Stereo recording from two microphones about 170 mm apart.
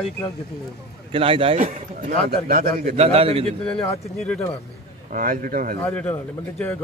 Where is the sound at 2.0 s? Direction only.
60° right (ahead or behind).